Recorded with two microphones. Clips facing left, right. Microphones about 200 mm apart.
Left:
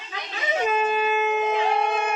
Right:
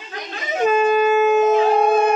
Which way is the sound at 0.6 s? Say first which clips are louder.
Right 8 dB; 45° right (ahead or behind).